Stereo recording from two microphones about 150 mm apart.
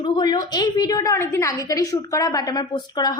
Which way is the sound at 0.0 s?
30° left (ahead or behind).